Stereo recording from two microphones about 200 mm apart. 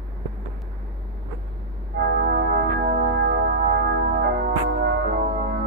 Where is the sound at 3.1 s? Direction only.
50° right (ahead or behind).